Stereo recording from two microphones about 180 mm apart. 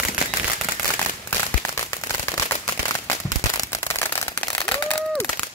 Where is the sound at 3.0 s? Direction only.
15° left (ahead or behind).